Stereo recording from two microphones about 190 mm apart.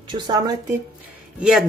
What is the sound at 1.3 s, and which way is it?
Speech, 5° right (ahead or behind).